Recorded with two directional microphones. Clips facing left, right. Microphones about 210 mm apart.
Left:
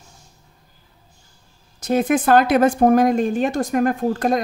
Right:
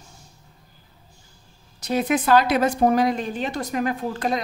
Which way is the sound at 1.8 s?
50° left (ahead or behind).